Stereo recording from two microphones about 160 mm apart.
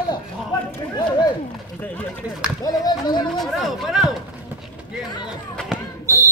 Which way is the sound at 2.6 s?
25° left (ahead or behind).